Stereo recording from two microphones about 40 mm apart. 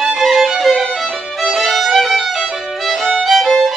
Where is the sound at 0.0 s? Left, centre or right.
Centre.